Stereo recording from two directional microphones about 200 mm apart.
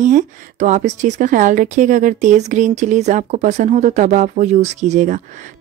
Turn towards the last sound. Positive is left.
turn(degrees=-35)  # may be behind; listen again after turning